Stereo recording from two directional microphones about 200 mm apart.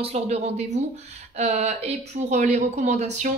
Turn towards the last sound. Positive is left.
turn(degrees=-35)  # may be behind; listen again after turning